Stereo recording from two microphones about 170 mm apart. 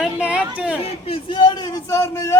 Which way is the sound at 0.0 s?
5° right (ahead or behind).